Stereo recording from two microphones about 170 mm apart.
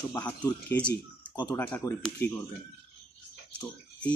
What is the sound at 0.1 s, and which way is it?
Speech, 10° left (ahead or behind).